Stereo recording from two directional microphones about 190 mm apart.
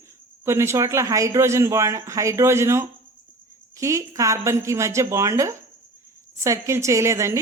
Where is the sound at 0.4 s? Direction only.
15° right (ahead or behind).